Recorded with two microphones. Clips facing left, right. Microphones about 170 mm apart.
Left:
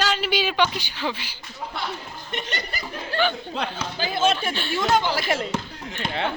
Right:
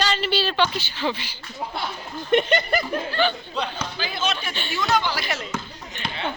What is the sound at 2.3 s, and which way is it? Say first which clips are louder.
Speech: right 13 dB; 55° right (ahead or behind).